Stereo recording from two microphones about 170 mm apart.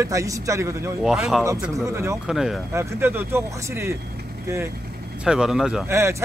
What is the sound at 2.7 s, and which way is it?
Speech, 15° right (ahead or behind).